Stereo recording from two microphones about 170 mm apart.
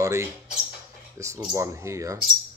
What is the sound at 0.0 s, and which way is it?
Speech, 15° right (ahead or behind).